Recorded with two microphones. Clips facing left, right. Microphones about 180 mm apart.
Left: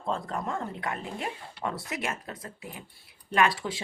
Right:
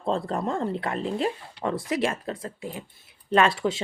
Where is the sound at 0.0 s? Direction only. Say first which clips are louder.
Right 5 dB; 30° right (ahead or behind).